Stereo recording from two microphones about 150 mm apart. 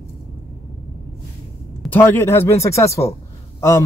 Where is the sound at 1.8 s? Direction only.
15° left (ahead or behind).